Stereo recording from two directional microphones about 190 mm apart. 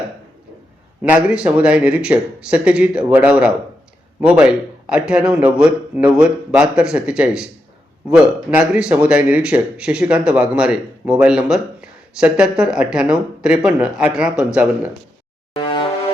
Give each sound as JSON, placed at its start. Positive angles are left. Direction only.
{"t": 1.0, "sound": "speech", "side_deg": -5}
{"t": 15.5, "sound": "music", "side_deg": 25}